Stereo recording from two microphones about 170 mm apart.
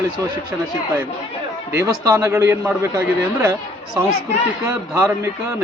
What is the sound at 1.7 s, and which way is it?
A man's voice, 15° right (ahead or behind).